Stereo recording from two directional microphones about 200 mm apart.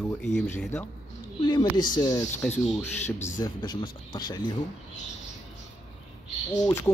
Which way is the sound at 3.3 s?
20° left (ahead or behind).